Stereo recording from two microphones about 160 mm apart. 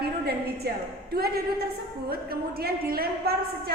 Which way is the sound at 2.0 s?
75° right (ahead or behind).